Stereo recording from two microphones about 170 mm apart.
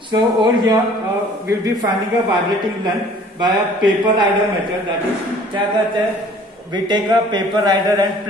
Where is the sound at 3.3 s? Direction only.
25° right (ahead or behind).